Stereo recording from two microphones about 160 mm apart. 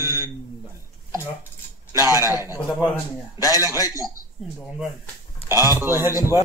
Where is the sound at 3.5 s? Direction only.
20° right (ahead or behind).